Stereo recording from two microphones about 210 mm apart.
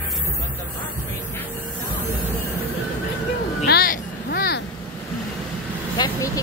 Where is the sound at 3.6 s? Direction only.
45° left (ahead or behind).